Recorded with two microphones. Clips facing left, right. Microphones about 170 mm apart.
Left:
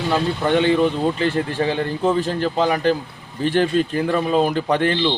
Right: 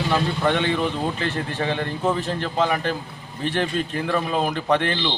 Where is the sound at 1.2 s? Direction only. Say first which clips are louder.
Left 5 dB; 35° left (ahead or behind).